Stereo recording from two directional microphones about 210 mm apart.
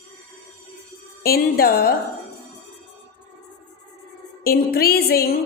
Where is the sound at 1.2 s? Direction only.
45° left (ahead or behind).